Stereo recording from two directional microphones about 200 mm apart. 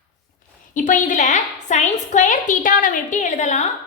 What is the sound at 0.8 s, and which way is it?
A woman's voice, 40° left (ahead or behind).